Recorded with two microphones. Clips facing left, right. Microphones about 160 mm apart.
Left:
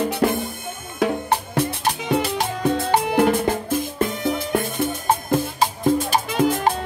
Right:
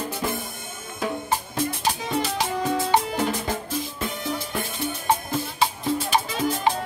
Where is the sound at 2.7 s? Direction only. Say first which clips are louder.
Left 4 dB; 60° left (ahead or behind).